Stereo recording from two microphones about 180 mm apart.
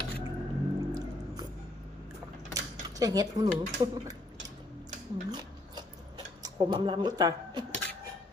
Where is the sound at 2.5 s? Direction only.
20° right (ahead or behind).